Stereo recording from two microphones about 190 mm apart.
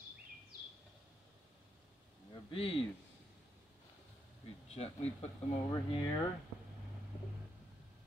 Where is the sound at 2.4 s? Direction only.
30° left (ahead or behind).